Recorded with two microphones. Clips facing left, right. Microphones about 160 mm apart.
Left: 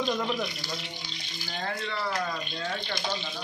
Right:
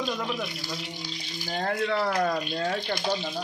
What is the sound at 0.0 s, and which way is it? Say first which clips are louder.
Speech: left 1 dB; 5° right (ahead or behind).